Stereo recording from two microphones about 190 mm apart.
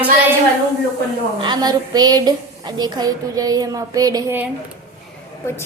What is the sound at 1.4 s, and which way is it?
A woman's voice, 20° right (ahead or behind).